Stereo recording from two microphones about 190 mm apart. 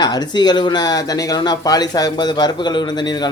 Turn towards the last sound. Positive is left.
turn(degrees=20)  # may be behind; listen again after turning